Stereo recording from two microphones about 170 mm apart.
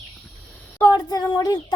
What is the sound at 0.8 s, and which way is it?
Child singing, 25° left (ahead or behind).